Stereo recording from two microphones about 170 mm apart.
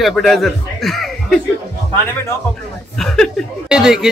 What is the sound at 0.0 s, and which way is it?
Speech, centre (ahead or behind).